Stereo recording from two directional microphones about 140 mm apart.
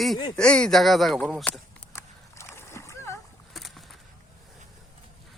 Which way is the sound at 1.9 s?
15° left (ahead or behind).